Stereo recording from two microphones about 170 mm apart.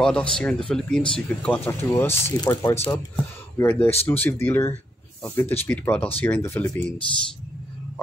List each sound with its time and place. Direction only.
0.0 s speech: 5° left (ahead or behind)